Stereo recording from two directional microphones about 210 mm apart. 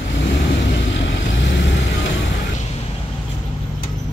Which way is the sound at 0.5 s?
60° left (ahead or behind).